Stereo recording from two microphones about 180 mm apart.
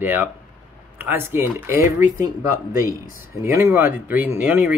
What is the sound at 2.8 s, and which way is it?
Speech, 50° left (ahead or behind).